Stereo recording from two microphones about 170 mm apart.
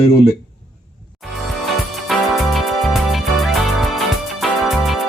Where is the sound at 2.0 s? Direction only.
Centre (ahead or behind).